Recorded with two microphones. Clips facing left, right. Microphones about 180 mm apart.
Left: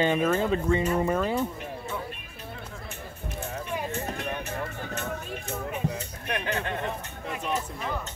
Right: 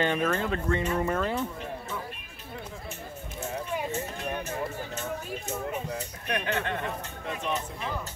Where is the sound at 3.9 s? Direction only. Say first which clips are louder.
Left 1 dB; 65° left (ahead or behind).